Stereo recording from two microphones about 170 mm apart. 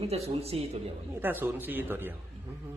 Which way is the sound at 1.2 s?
10° right (ahead or behind).